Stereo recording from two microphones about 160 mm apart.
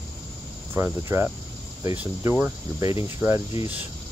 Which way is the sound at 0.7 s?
15° right (ahead or behind).